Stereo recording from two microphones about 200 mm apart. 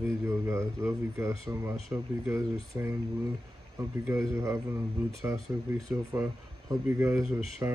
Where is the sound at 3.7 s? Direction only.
15° right (ahead or behind).